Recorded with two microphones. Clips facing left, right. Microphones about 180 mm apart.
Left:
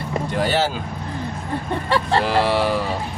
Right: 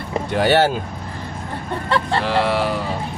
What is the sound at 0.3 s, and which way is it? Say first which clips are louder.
Speech: right 5 dB; 65° right (ahead or behind).